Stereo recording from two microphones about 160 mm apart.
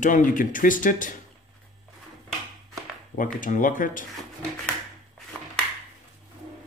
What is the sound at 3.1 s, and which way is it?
Speech, 55° left (ahead or behind).